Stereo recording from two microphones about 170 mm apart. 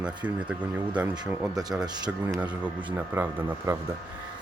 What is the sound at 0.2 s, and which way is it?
Speech, 10° right (ahead or behind).